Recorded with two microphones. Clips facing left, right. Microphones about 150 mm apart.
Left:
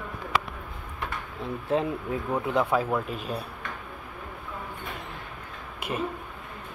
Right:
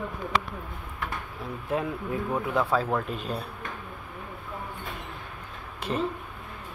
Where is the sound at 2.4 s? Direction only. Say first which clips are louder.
Left 2 dB; 20° left (ahead or behind).